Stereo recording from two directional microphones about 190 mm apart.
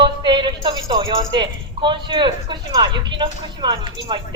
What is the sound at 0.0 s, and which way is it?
A woman's voice, 25° right (ahead or behind).